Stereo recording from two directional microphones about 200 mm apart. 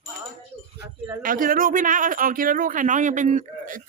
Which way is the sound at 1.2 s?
45° right (ahead or behind).